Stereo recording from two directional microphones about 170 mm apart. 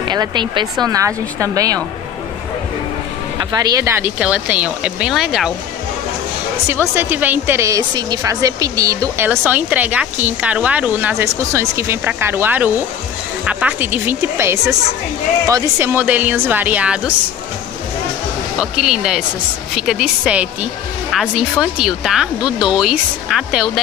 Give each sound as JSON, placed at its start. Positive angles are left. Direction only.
{"t": 0.1, "sound": "speech", "side_deg": -25}
{"t": 3.3, "sound": "speech", "side_deg": -25}
{"t": 6.7, "sound": "speech", "side_deg": -15}
{"t": 18.6, "sound": "speech", "side_deg": -5}